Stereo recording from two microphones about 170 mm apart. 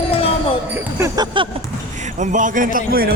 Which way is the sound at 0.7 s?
15° right (ahead or behind).